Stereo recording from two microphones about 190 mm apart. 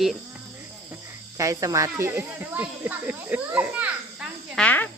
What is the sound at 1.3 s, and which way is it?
Speech, 15° right (ahead or behind).